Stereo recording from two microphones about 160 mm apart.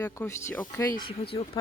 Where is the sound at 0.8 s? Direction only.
25° left (ahead or behind).